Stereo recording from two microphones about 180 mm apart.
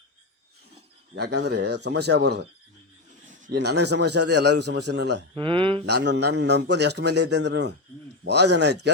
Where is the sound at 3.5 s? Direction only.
65° right (ahead or behind).